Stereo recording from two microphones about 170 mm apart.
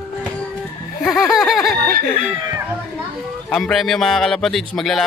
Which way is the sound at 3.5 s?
Centre (ahead or behind).